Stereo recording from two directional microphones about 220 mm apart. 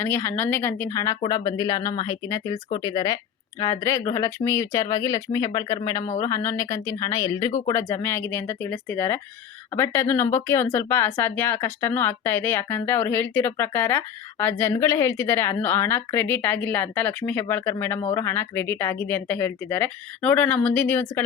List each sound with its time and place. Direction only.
0.0 s speech: 10° left (ahead or behind)